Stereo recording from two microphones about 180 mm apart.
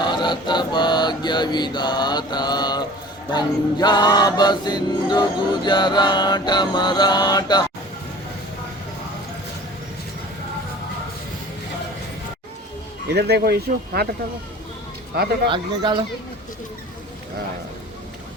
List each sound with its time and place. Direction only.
0.0 s music: 25° left (ahead or behind)
13.1 s speech: 65° right (ahead or behind)
15.4 s speech: 25° right (ahead or behind)